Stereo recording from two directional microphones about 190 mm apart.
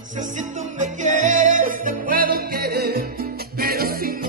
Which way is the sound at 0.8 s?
40° right (ahead or behind).